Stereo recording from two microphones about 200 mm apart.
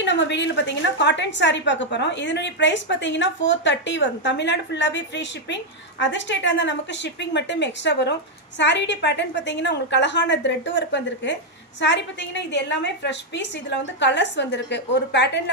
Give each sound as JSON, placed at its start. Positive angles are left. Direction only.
{"t": 0.0, "sound": "a woman's voice", "side_deg": 60}